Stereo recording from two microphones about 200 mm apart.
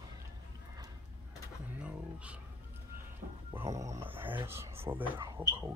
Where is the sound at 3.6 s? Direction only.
15° right (ahead or behind).